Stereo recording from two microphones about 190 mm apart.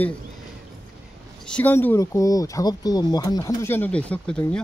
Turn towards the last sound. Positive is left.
turn(degrees=5)  # may be behind; listen again after turning